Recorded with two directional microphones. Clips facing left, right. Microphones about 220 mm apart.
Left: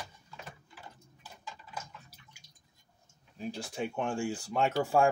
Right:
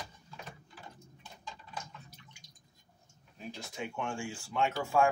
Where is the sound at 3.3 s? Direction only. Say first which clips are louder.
Left 5 dB; 35° left (ahead or behind).